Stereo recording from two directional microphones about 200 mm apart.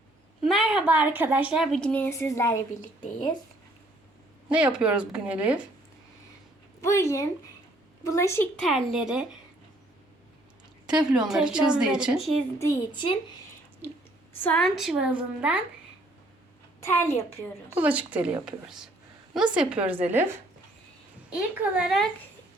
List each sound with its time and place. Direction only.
0.4 s a woman's voice: centre (ahead or behind); by 2.6 s 15° left (ahead or behind)
4.4 s a woman's voice: 5° right (ahead or behind)
6.8 s a woman's voice: 15° left (ahead or behind); by 9.2 s 5° right (ahead or behind)
10.8 s a woman's voice: 5° right (ahead or behind)
12.5 s a woman's voice: 20° left (ahead or behind)
14.4 s a woman's voice: 5° left (ahead or behind)
17.1 s a woman's voice: 30° left (ahead or behind)
17.7 s a woman's voice: 5° right (ahead or behind)